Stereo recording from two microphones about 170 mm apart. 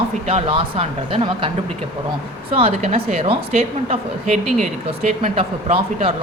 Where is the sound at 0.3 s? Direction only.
35° right (ahead or behind).